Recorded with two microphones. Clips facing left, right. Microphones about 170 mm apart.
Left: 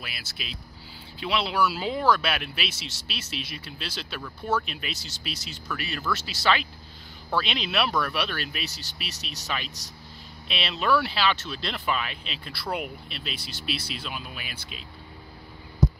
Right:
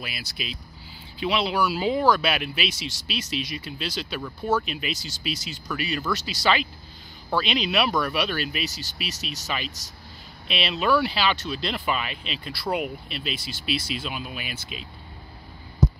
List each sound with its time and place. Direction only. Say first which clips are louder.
0.0 s speech: right 5 dB; centre (ahead or behind)